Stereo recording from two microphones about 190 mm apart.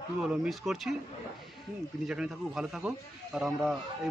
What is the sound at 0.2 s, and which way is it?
Speech, 5° right (ahead or behind).